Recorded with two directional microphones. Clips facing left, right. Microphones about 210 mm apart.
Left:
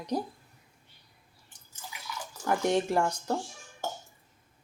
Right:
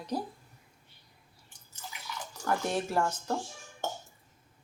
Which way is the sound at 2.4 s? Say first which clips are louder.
Left 4 dB; 20° left (ahead or behind).